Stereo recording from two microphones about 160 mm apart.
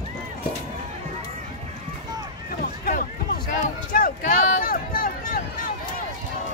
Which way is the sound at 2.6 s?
65° left (ahead or behind).